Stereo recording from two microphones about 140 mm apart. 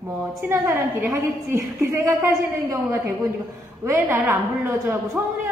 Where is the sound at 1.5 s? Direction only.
20° right (ahead or behind).